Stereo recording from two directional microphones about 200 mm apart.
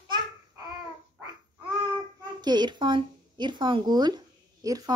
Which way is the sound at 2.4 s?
20° right (ahead or behind).